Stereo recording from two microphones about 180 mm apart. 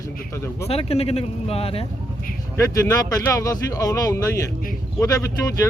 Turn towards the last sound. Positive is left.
turn(degrees=15)  # may be behind; listen again after turning